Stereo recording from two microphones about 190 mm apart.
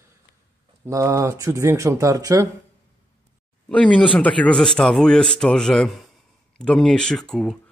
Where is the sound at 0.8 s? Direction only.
15° right (ahead or behind).